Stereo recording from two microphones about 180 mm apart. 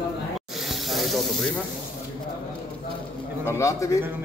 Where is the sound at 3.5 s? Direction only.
15° left (ahead or behind).